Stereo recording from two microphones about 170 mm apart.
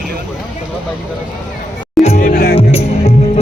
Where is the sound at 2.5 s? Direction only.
35° left (ahead or behind).